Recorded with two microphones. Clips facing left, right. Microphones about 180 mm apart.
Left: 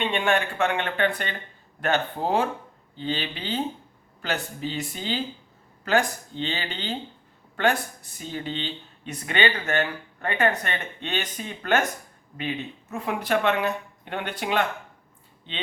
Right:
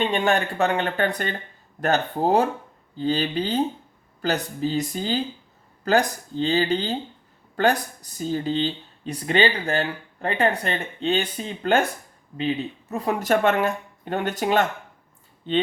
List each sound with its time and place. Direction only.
0.0 s speech: 40° right (ahead or behind)